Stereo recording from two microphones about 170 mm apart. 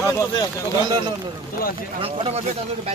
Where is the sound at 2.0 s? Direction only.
40° right (ahead or behind).